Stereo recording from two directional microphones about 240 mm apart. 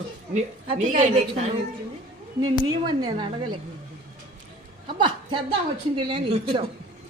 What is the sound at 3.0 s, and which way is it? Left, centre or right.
Speech, centre.